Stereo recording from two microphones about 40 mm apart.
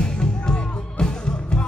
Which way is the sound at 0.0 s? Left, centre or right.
Left.